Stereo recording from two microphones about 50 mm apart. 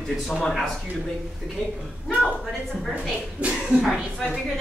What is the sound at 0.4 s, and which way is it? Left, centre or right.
Speech, centre.